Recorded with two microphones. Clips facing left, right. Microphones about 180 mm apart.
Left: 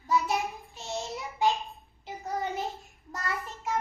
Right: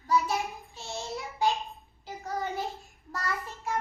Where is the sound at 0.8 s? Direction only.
20° left (ahead or behind).